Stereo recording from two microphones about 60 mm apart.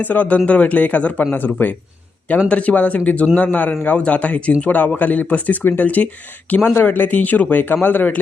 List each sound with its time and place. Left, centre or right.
0.0 s a man's voice: left
2.5 s speech: left